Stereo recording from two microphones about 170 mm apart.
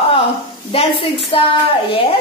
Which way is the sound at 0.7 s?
35° left (ahead or behind).